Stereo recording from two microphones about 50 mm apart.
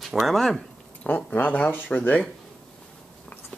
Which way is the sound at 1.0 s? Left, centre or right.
Left.